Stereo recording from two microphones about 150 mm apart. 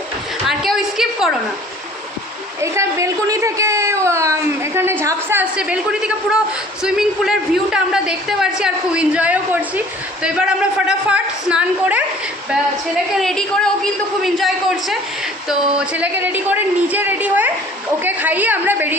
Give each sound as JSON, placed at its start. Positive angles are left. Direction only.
{"t": 0.4, "sound": "a sound", "side_deg": 0}
{"t": 2.6, "sound": "a woman's voice", "side_deg": -20}
{"t": 13.1, "sound": "a man's voice", "side_deg": 5}